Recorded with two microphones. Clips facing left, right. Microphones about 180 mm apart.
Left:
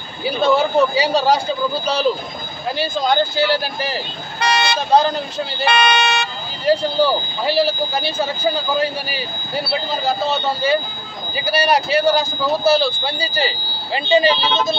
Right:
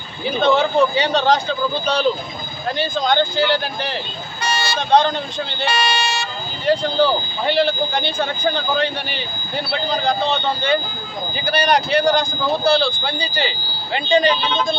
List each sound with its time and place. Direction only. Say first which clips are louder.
0.2 s speech: even; 5° left (ahead or behind)
2.7 s speech: left 1 dB; 5° left (ahead or behind)
4.4 s vehicle: left 4 dB; 65° left (ahead or behind)
4.7 s speech: right 1 dB; 5° left (ahead or behind)
5.7 s speech: left 5 dB; 60° left (ahead or behind)
6.6 s speech: left 1 dB; 5° left (ahead or behind)